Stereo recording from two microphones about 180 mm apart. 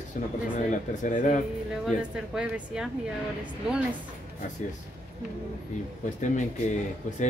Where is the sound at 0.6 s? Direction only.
45° left (ahead or behind).